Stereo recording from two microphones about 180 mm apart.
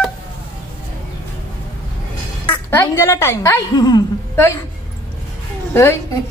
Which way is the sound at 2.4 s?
10° left (ahead or behind).